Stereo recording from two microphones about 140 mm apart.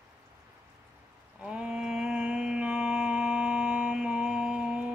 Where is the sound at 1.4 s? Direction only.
5° right (ahead or behind).